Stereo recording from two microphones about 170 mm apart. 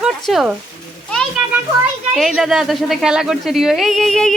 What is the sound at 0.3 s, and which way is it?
Speech, centre (ahead or behind).